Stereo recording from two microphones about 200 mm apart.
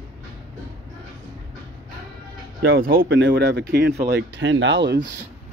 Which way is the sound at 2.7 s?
45° right (ahead or behind).